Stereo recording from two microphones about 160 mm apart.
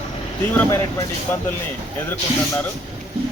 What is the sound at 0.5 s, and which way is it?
Speech, 15° left (ahead or behind).